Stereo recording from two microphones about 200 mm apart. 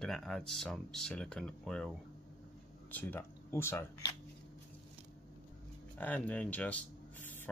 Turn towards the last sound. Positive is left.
turn(degrees=10)  # may be behind; listen again after turning